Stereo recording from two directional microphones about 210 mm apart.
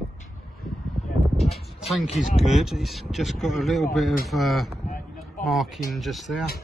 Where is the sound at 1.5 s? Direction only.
Centre (ahead or behind).